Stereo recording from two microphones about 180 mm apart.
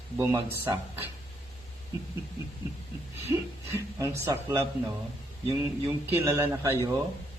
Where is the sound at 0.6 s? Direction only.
15° right (ahead or behind).